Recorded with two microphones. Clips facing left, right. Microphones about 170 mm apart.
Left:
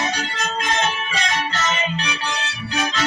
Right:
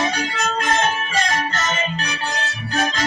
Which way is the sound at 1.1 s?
45° right (ahead or behind).